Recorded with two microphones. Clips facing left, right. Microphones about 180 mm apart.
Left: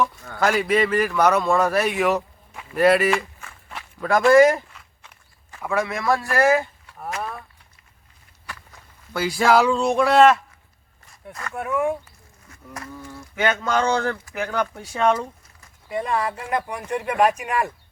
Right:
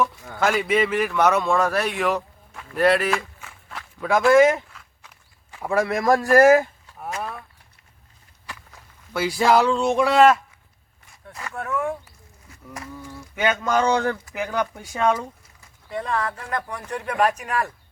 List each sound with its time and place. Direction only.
0.3 s a man's voice: centre (ahead or behind)
5.6 s speech: 35° right (ahead or behind)
9.1 s speech: 5° right (ahead or behind)
11.5 s speech: 15° left (ahead or behind)
13.4 s speech: 10° right (ahead or behind)
15.9 s speech: 10° left (ahead or behind)